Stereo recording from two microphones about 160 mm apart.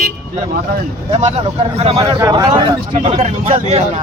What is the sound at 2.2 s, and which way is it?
Speech, 25° right (ahead or behind).